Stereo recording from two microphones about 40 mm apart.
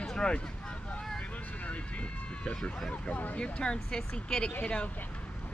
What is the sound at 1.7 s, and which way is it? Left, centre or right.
Vehicle, left.